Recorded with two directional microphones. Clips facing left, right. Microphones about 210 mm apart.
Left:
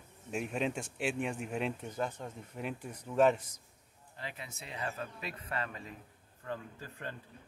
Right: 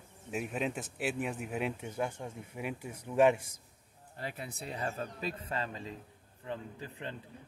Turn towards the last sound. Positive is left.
turn(degrees=-20)  # may be behind; listen again after turning